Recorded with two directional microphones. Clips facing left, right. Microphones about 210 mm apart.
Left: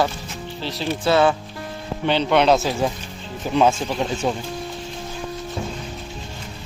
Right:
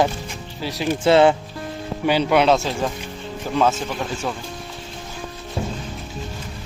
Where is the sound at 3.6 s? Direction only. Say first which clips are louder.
Left 2 dB; 15° left (ahead or behind).